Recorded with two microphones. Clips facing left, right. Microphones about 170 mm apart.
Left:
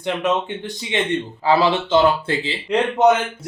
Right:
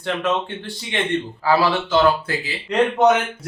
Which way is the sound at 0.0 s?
15° left (ahead or behind).